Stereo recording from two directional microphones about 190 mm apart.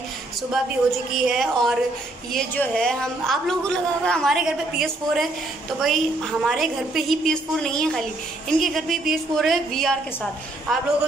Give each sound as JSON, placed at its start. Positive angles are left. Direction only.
{"t": 0.5, "sound": "a man's voice", "side_deg": -5}
{"t": 6.4, "sound": "a man's voice", "side_deg": 0}